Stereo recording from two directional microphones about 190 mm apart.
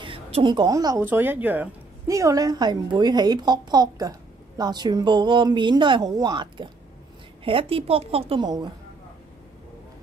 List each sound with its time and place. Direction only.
0.0 s a woman's voice: 25° right (ahead or behind)